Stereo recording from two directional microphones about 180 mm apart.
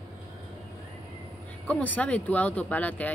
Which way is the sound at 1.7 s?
10° left (ahead or behind).